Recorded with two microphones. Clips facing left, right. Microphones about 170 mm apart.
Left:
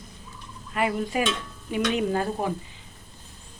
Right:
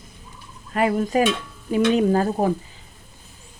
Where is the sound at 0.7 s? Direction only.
45° right (ahead or behind).